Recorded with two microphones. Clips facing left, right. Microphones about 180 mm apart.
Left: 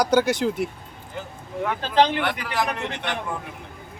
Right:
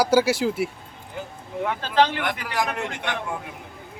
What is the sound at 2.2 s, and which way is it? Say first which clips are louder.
Speech: left 1 dB; 10° right (ahead or behind).